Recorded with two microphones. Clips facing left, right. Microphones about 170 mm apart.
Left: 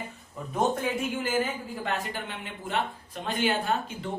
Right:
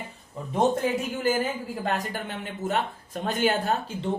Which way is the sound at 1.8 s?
40° right (ahead or behind).